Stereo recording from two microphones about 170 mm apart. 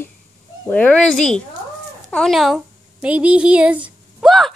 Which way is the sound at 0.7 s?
10° left (ahead or behind).